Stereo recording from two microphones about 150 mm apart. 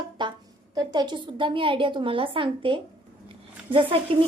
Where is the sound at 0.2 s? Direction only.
30° right (ahead or behind).